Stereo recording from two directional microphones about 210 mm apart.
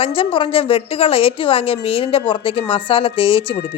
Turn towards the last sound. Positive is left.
turn(degrees=25)  # may be behind; listen again after turning